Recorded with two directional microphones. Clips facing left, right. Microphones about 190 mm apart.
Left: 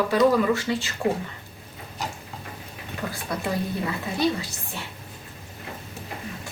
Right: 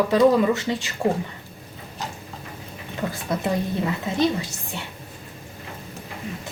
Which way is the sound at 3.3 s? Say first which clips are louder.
Right 4 dB; 20° right (ahead or behind).